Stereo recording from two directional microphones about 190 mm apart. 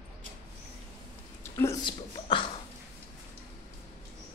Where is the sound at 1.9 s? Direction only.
25° left (ahead or behind).